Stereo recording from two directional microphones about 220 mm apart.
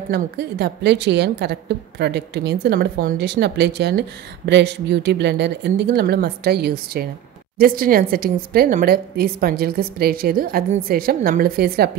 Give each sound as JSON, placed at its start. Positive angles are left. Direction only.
{"t": 0.1, "sound": "a woman's voice", "side_deg": -45}